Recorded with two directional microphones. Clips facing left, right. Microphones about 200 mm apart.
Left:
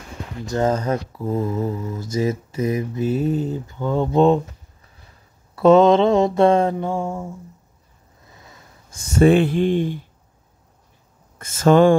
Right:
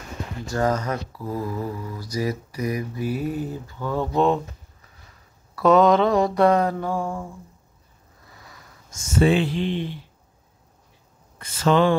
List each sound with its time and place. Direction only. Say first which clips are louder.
0.5 s speech: left 3 dB; 25° left (ahead or behind)
5.6 s speech: left 4 dB; 25° left (ahead or behind)
8.3 s sniff: left 1 dB; 25° left (ahead or behind)
9.2 s speech: left 5 dB; 50° left (ahead or behind)
11.3 s speech: left 5 dB; 45° left (ahead or behind)